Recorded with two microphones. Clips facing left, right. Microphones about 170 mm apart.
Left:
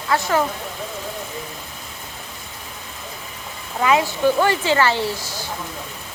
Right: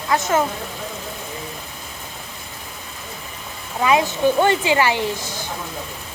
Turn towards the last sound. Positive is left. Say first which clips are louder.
# even
turn(degrees=-20)  # may be behind; listen again after turning